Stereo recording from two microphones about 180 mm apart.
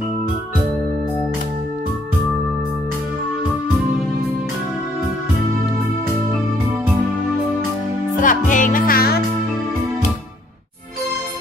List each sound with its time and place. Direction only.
8.2 s music: 45° left (ahead or behind)